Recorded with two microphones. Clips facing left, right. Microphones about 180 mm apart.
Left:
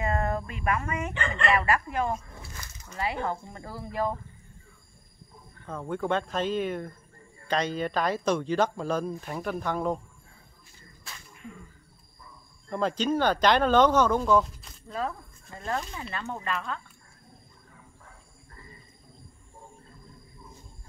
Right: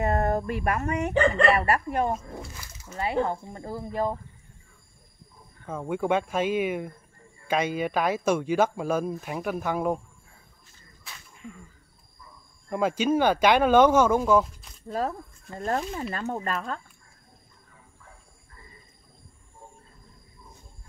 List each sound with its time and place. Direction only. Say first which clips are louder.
0.0 s a sound: right 4 dB; 45° right (ahead or behind)
0.7 s speech: even; 40° right (ahead or behind)
2.9 s speech: right 4 dB; 25° right (ahead or behind)
5.7 s speech: right 3 dB; 10° right (ahead or behind)
12.6 s speech: right 3 dB; 10° right (ahead or behind)
14.9 s speech: right 4 dB; 40° right (ahead or behind)